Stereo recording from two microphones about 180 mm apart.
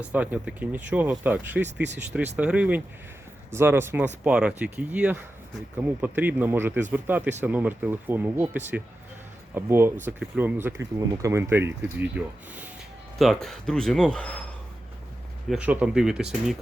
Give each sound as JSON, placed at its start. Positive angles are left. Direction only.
{"t": 0.0, "sound": "speech", "side_deg": -10}
{"t": 1.6, "sound": "speech", "side_deg": -75}
{"t": 2.0, "sound": "speech", "side_deg": -10}
{"t": 13.1, "sound": "speech", "side_deg": 0}
{"t": 15.4, "sound": "speech", "side_deg": -5}